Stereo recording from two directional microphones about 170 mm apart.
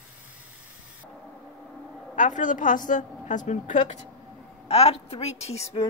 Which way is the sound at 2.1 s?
50° left (ahead or behind).